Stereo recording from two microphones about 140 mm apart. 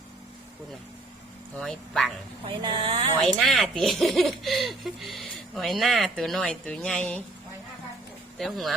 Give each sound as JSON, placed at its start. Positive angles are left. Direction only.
{"t": 1.5, "sound": "speech", "side_deg": 5}
{"t": 2.5, "sound": "speech", "side_deg": -35}
{"t": 3.2, "sound": "speech", "side_deg": 0}
{"t": 8.4, "sound": "speech", "side_deg": 0}